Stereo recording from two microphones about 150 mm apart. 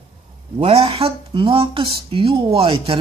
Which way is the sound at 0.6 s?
40° right (ahead or behind).